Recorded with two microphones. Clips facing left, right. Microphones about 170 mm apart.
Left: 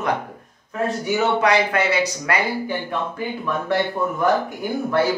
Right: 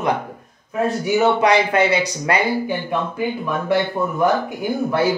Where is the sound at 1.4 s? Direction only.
20° right (ahead or behind).